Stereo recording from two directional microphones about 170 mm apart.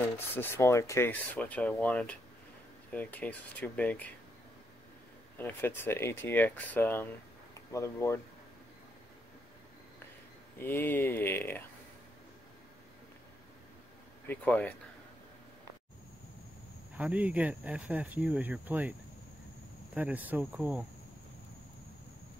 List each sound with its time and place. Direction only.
0.3 s speech: 15° left (ahead or behind)
5.4 s speech: 10° left (ahead or behind)
10.6 s speech: 10° left (ahead or behind)
14.2 s speech: 10° left (ahead or behind)
16.9 s speech: 10° right (ahead or behind)